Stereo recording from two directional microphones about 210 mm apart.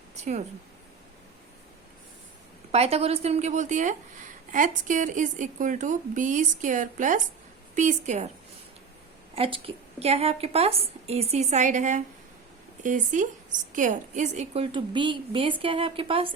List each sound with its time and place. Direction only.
0.2 s speech: 35° right (ahead or behind)
2.7 s a woman's voice: 30° right (ahead or behind)
9.3 s a woman's voice: 25° right (ahead or behind)